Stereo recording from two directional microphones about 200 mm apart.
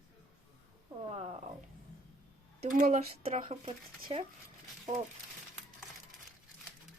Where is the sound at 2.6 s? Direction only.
40° right (ahead or behind).